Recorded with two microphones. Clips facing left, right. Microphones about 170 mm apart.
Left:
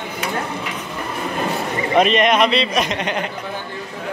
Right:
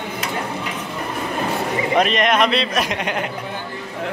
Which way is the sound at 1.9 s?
Centre (ahead or behind).